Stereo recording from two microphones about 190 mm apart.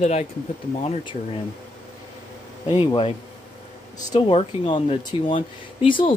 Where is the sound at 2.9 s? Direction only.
30° left (ahead or behind).